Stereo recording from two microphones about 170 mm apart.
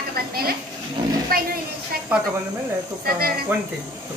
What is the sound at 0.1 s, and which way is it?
Speech, 60° right (ahead or behind).